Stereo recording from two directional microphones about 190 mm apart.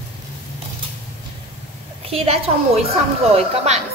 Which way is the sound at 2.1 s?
30° right (ahead or behind).